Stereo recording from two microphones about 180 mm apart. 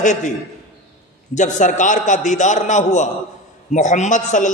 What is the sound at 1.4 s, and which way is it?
A man's voice, 45° left (ahead or behind).